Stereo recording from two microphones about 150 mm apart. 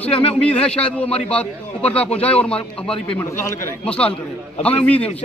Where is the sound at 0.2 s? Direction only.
10° left (ahead or behind).